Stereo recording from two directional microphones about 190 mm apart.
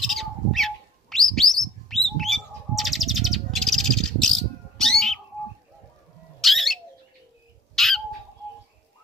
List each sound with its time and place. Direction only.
0.0 s bird: centre (ahead or behind)
6.4 s bird: centre (ahead or behind)
7.7 s chicken: centre (ahead or behind)